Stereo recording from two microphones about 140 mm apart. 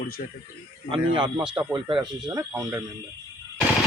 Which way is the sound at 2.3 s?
25° right (ahead or behind).